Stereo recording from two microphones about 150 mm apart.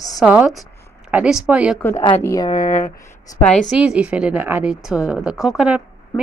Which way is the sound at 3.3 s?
5° left (ahead or behind).